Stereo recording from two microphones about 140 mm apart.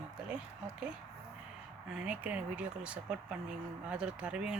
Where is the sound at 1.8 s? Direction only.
5° right (ahead or behind).